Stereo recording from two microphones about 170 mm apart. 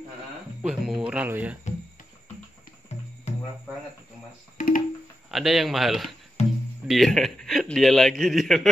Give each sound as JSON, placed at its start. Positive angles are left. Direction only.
{"t": 0.6, "sound": "speech", "side_deg": -5}
{"t": 2.9, "sound": "music", "side_deg": 40}
{"t": 4.6, "sound": "music", "side_deg": 50}
{"t": 5.3, "sound": "a man's voice", "side_deg": 0}
{"t": 6.4, "sound": "music", "side_deg": 40}
{"t": 6.9, "sound": "a man's voice", "side_deg": 0}